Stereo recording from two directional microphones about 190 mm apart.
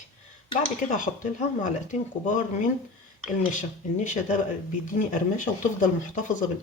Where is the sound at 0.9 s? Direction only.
45° left (ahead or behind).